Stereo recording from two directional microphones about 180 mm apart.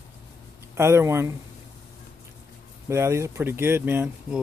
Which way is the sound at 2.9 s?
15° right (ahead or behind).